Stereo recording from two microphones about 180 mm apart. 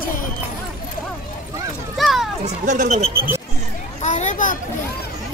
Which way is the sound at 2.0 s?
Centre (ahead or behind).